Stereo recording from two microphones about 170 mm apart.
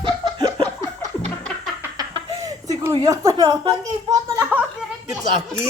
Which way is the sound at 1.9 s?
20° right (ahead or behind).